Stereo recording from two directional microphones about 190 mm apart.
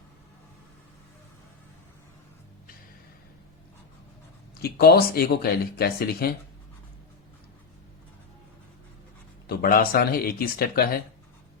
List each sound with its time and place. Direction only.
4.6 s speech: 55° left (ahead or behind)
9.5 s speech: 50° left (ahead or behind)